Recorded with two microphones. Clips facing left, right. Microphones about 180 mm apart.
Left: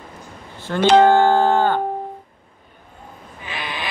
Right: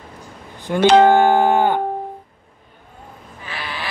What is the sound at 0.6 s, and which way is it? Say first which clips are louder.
Music: right 1 dB; 15° right (ahead or behind).